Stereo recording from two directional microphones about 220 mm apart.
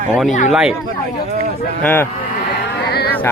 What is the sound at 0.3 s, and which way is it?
Speech, 35° left (ahead or behind).